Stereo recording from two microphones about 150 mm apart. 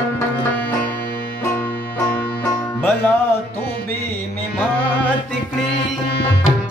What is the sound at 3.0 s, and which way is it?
Music, 10° left (ahead or behind).